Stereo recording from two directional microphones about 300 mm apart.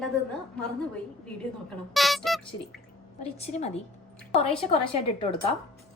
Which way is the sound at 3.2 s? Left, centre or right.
Left.